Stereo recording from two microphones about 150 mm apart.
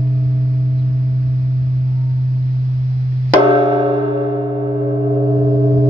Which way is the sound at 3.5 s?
35° right (ahead or behind).